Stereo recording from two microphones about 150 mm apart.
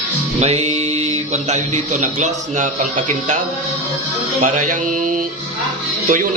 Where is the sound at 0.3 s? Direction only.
45° right (ahead or behind).